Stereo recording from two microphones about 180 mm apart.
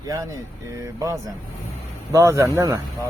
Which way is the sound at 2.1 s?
15° right (ahead or behind).